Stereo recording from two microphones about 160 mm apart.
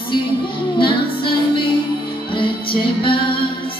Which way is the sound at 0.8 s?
30° left (ahead or behind).